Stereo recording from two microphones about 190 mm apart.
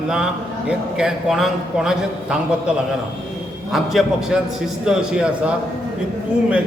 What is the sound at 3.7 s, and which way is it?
A man's voice, centre (ahead or behind).